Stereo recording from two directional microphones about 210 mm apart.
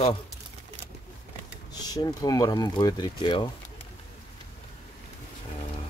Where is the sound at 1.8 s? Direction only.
20° left (ahead or behind).